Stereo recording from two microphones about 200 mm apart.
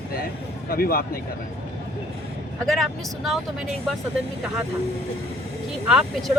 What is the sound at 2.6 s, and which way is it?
Speech, centre (ahead or behind).